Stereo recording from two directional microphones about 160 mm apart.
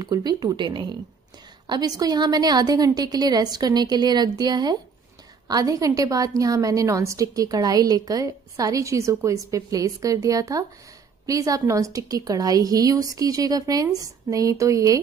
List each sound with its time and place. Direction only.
0.0 s a woman's voice: 25° right (ahead or behind)